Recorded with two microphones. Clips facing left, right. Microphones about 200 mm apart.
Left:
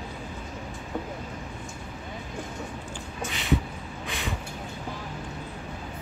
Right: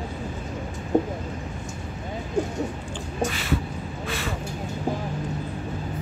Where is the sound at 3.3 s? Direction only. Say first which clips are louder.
Even; 20° left (ahead or behind).